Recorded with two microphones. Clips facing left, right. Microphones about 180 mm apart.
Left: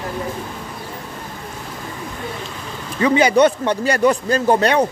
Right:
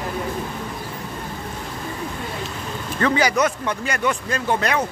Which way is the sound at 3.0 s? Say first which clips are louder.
Left 4 dB; 20° left (ahead or behind).